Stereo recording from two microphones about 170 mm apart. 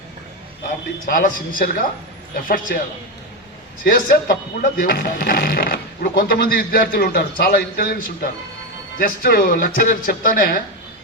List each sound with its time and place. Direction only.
1.0 s speech: 55° left (ahead or behind)
4.1 s speech: 60° left (ahead or behind)